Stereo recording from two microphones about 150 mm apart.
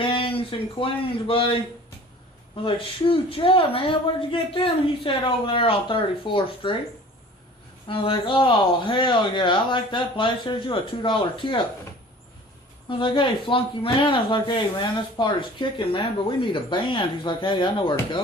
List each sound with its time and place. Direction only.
0.0 s a sound: 35° left (ahead or behind)
1.3 s speech: 35° left (ahead or behind)
2.6 s speech: 35° left (ahead or behind)
7.9 s speech: 35° left (ahead or behind)
12.9 s speech: 35° left (ahead or behind)